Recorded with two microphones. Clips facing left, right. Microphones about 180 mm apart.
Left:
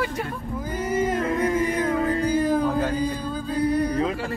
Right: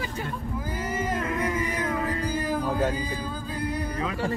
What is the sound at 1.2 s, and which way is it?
Music, 30° left (ahead or behind).